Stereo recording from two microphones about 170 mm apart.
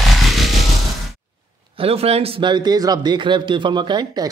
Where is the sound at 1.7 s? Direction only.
35° right (ahead or behind).